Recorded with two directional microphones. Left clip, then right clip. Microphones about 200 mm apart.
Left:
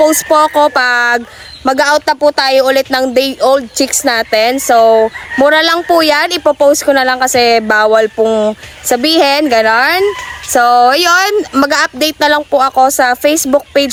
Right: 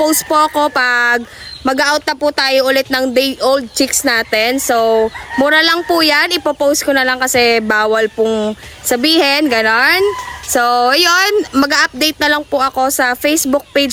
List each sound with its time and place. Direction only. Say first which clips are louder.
0.0 s speech: left 4 dB; 5° right (ahead or behind)